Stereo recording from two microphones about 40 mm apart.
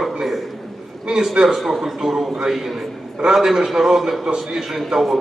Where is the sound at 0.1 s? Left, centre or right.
Centre.